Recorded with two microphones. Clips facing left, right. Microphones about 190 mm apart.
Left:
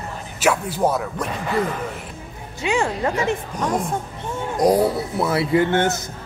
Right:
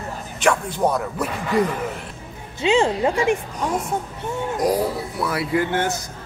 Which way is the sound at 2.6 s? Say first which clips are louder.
Right 4 dB; 20° right (ahead or behind).